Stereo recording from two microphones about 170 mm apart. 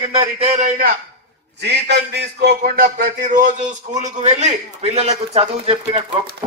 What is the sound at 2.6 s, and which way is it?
A man's voice, 60° right (ahead or behind).